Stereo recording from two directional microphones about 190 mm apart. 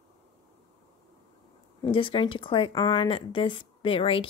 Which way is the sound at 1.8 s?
25° left (ahead or behind).